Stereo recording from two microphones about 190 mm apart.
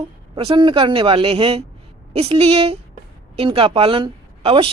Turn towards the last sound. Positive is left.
turn(degrees=-30)  # may be behind; listen again after turning